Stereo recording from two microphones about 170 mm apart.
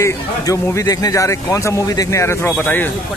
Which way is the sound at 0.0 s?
20° left (ahead or behind).